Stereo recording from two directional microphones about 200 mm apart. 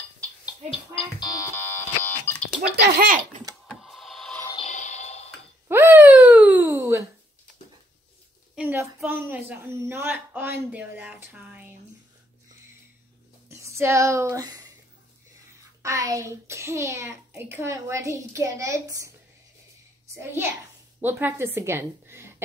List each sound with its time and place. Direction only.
0.7 s a sound: 25° left (ahead or behind)
2.7 s speech: 50° right (ahead or behind)
3.6 s music: centre (ahead or behind)
4.6 s music: 35° left (ahead or behind)
5.7 s a sound: 10° right (ahead or behind)
8.5 s speech: 10° right (ahead or behind)
13.5 s speech: 15° right (ahead or behind)
15.8 s speech: 15° right (ahead or behind)
20.2 s a woman's voice: 10° right (ahead or behind)